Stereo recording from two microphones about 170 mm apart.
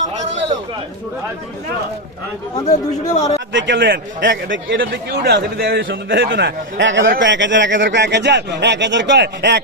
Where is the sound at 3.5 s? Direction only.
90° right.